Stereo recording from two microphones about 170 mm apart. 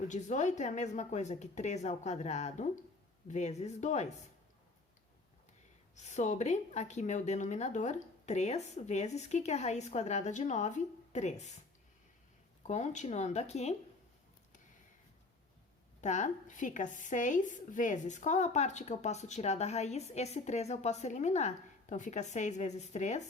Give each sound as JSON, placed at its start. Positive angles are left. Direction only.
{"t": 0.1, "sound": "a woman's voice", "side_deg": 45}
{"t": 6.0, "sound": "a woman's voice", "side_deg": 40}
{"t": 12.6, "sound": "a woman's voice", "side_deg": 45}
{"t": 16.0, "sound": "a woman's voice", "side_deg": 45}